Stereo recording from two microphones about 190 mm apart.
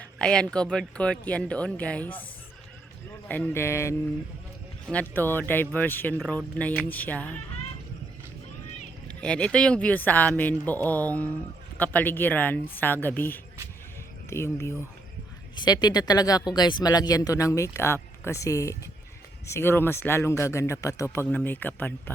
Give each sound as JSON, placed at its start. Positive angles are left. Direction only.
{"t": 0.0, "sound": "speech", "side_deg": 5}
{"t": 3.2, "sound": "speech", "side_deg": 10}
{"t": 9.0, "sound": "speech", "side_deg": 5}